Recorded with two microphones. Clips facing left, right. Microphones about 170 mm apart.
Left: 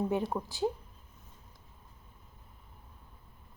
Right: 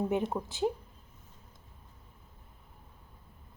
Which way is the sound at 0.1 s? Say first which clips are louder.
Right 1 dB; 20° right (ahead or behind).